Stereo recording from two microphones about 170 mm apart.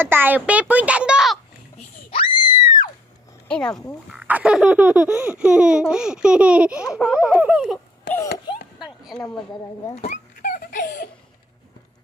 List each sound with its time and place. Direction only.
0.0 s a child's voice: 10° right (ahead or behind)
2.0 s screaming: 30° left (ahead or behind)
3.5 s laughter: 5° left (ahead or behind)
4.1 s laughter: 5° right (ahead or behind)
8.8 s a sound: centre (ahead or behind)
9.9 s a sound: 45° left (ahead or behind); by 10.8 s 60° left (ahead or behind)
10.8 s laughter: 50° left (ahead or behind)